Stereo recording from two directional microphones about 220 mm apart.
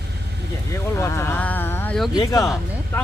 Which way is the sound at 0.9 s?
10° left (ahead or behind).